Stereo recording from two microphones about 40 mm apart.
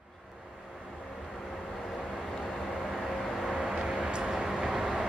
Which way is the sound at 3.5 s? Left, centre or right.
Centre.